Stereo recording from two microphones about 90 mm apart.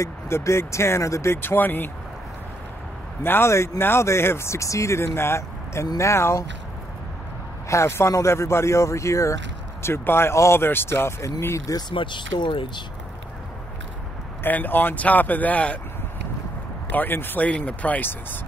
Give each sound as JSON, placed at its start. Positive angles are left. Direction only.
{"t": 0.0, "sound": "speech", "side_deg": 35}
{"t": 3.2, "sound": "speech", "side_deg": 25}
{"t": 7.6, "sound": "speech", "side_deg": 35}
{"t": 11.9, "sound": "speech", "side_deg": 65}
{"t": 14.4, "sound": "speech", "side_deg": 20}
{"t": 16.9, "sound": "speech", "side_deg": 20}